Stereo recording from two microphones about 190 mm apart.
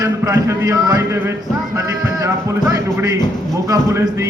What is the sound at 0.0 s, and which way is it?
Speech, 15° right (ahead or behind).